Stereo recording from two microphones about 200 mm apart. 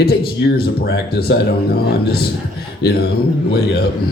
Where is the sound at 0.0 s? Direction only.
50° left (ahead or behind).